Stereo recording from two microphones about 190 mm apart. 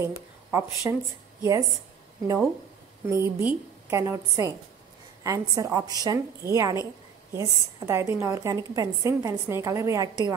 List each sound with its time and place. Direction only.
0.0 s a woman's voice: 15° right (ahead or behind)
3.1 s a woman's voice: 15° right (ahead or behind)